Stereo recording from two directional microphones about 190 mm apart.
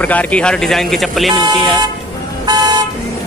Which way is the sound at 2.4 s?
20° right (ahead or behind).